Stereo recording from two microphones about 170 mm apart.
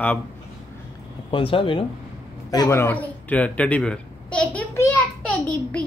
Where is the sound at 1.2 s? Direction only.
30° left (ahead or behind).